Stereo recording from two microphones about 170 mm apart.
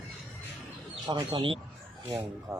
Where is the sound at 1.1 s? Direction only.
25° right (ahead or behind).